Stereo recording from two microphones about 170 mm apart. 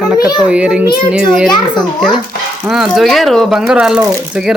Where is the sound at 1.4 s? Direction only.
25° left (ahead or behind).